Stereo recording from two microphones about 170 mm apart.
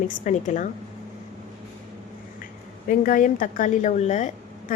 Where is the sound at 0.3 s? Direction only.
50° left (ahead or behind).